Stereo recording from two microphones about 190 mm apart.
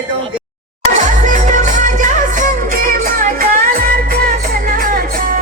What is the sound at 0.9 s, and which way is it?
Music, 40° right (ahead or behind).